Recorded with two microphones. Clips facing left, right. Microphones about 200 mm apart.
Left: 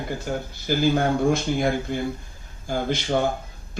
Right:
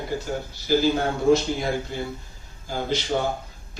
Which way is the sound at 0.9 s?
50° left (ahead or behind).